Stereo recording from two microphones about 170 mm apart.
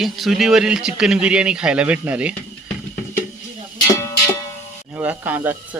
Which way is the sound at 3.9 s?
20° left (ahead or behind).